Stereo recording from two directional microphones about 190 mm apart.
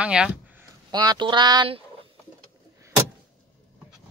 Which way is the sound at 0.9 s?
20° right (ahead or behind).